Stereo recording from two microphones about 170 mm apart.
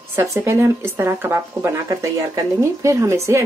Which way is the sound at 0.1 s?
15° right (ahead or behind).